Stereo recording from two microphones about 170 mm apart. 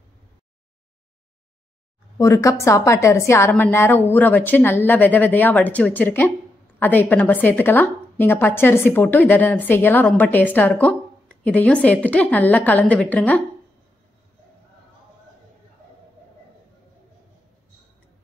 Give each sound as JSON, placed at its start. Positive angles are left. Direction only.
{"t": 2.1, "sound": "a woman's voice", "side_deg": 20}